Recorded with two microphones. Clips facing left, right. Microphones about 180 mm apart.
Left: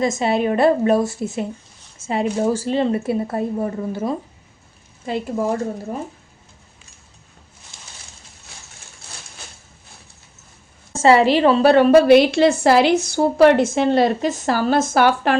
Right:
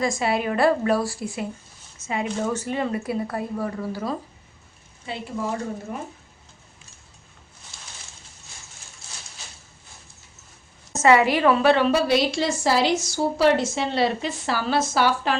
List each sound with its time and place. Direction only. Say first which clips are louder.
0.0 s speech: left 5 dB; 25° left (ahead or behind)
5.0 s speech: left 7 dB; 45° left (ahead or behind)
10.9 s speech: left 4 dB; 30° left (ahead or behind)
11.7 s a woman's voice: left 9 dB; 50° left (ahead or behind)